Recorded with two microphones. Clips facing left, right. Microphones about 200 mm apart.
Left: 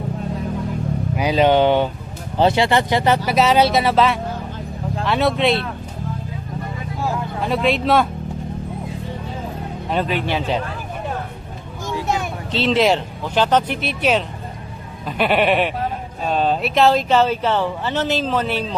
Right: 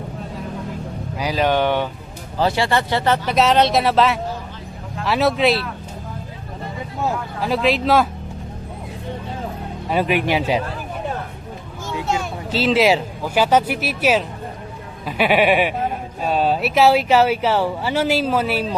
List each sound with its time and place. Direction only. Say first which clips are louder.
1.1 s speech: left 4 dB; 20° left (ahead or behind)
3.2 s speech: right 1 dB; centre (ahead or behind)
7.4 s speech: right 1 dB; centre (ahead or behind)
9.9 s speech: right 3 dB; 10° right (ahead or behind)
12.0 s a sound: even; 20° left (ahead or behind)
12.5 s speech: right 1 dB; 5° right (ahead or behind)